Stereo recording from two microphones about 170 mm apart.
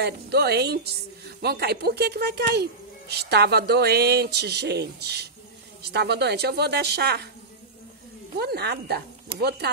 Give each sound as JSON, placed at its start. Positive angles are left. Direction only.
{"t": 0.0, "sound": "speech", "side_deg": -75}
{"t": 8.4, "sound": "speech", "side_deg": -70}